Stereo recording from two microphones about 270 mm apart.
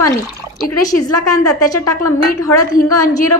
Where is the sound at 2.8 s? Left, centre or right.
Left.